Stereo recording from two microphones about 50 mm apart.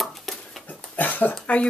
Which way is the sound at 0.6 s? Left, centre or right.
Left.